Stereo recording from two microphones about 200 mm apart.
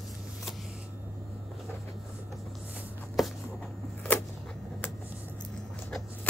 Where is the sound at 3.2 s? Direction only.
Centre (ahead or behind).